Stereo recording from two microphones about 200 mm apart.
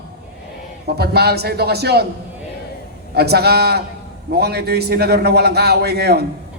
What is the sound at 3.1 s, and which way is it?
A man's voice, 55° right (ahead or behind).